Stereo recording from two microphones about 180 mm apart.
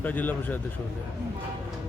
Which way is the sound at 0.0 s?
10° left (ahead or behind).